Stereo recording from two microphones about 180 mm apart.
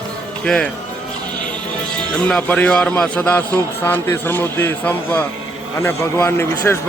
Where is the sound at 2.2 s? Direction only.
5° left (ahead or behind).